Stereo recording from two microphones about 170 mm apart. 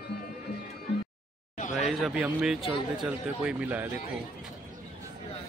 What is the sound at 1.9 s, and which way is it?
Speech, centre (ahead or behind).